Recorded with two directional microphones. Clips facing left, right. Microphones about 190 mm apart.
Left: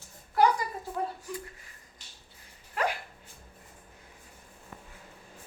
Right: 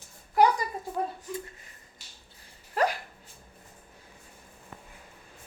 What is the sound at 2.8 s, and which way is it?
Dog, 35° right (ahead or behind).